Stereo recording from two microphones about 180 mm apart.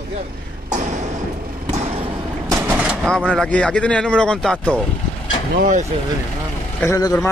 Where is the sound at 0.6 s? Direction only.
40° right (ahead or behind).